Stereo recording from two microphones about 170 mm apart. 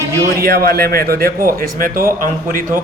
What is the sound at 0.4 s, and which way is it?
A man's voice, 60° right (ahead or behind).